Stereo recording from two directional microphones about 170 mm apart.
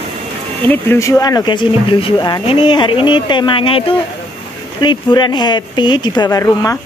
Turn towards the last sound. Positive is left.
turn(degrees=20)  # may be behind; listen again after turning